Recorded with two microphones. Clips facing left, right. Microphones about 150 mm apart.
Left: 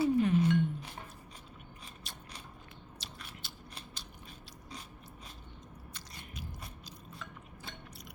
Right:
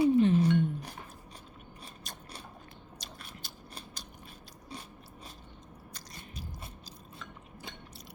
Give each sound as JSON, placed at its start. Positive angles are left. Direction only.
{"t": 0.0, "sound": "music", "side_deg": -30}
{"t": 2.0, "sound": "mechanisms", "side_deg": -45}
{"t": 3.0, "sound": "biting", "side_deg": -40}
{"t": 5.9, "sound": "biting", "side_deg": -35}